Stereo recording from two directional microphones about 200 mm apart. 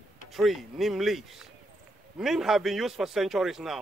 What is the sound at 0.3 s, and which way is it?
Speech, centre (ahead or behind).